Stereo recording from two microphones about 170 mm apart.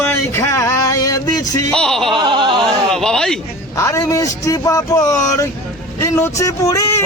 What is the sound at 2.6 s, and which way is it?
Speech, 5° left (ahead or behind).